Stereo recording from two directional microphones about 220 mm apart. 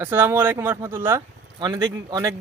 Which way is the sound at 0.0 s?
10° right (ahead or behind).